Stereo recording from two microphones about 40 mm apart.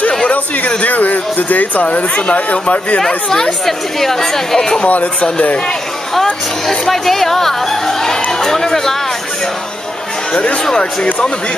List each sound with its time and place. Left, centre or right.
0.3 s speech: left
0.8 s speech: left
3.6 s speech: centre
4.8 s speech: left
6.9 s speech: centre
10.3 s speech: left